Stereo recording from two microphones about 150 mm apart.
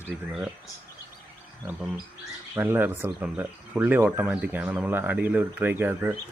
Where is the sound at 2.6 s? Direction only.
15° right (ahead or behind).